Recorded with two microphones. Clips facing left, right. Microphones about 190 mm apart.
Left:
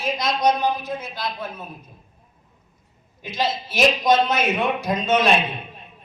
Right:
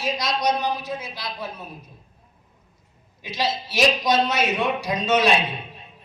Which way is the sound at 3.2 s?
50° left (ahead or behind).